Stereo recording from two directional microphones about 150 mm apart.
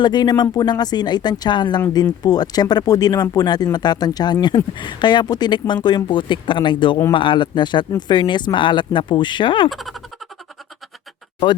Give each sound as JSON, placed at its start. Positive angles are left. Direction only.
{"t": 0.0, "sound": "speech", "side_deg": 30}
{"t": 9.6, "sound": "speech", "side_deg": 0}